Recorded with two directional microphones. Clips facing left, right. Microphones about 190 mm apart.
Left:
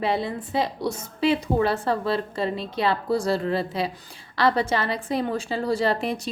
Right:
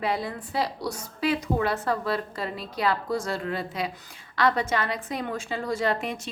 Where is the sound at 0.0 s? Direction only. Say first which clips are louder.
Left 3 dB; 25° left (ahead or behind).